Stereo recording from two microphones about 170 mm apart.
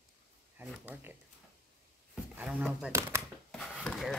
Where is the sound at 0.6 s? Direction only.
10° right (ahead or behind).